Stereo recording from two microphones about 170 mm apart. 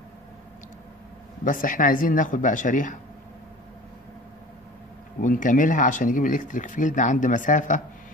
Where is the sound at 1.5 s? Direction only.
50° left (ahead or behind).